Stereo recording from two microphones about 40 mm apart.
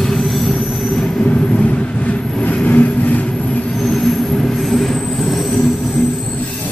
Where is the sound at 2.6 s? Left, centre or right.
Left.